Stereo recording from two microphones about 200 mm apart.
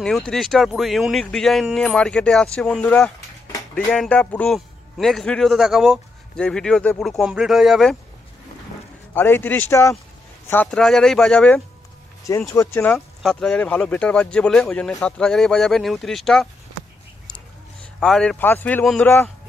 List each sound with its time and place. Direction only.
0.0 s a man's voice: 5° left (ahead or behind)
9.1 s a man's voice: 10° left (ahead or behind)
12.3 s a man's voice: 15° left (ahead or behind)
18.0 s speech: centre (ahead or behind)